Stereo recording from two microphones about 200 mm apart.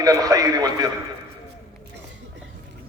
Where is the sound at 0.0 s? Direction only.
20° right (ahead or behind).